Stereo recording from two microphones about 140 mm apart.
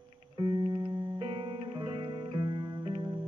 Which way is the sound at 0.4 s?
35° right (ahead or behind).